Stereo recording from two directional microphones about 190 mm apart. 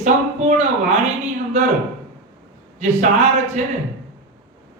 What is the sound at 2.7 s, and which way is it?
Speech, 35° right (ahead or behind).